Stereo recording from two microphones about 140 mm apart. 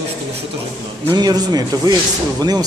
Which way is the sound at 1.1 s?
30° right (ahead or behind).